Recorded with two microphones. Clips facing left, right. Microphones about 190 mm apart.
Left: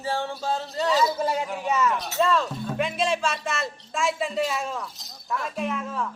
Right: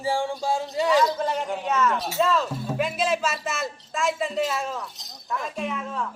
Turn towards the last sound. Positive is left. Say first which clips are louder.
# left 1 dB
turn(degrees=0)  # may be behind; listen again after turning